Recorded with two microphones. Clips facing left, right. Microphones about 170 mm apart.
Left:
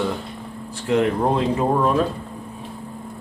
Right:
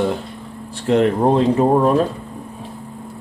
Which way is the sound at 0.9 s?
35° right (ahead or behind).